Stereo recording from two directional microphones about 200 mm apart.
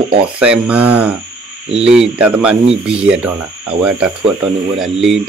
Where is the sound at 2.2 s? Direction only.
5° right (ahead or behind).